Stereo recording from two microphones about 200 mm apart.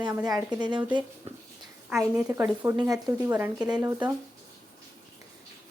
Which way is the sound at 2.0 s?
10° right (ahead or behind).